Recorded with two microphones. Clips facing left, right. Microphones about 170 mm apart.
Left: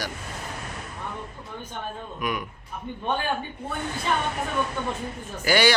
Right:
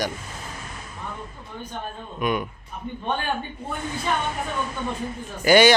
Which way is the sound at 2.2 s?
25° right (ahead or behind).